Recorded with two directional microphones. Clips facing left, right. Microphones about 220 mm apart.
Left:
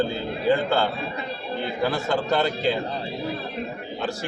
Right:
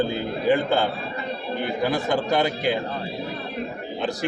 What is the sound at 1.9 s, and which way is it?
Speech, 15° right (ahead or behind).